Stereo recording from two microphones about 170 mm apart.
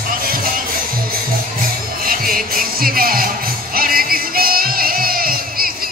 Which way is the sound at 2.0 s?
55° right (ahead or behind).